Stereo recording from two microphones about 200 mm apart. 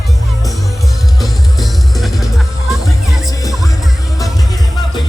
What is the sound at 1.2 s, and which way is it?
Music, centre (ahead or behind).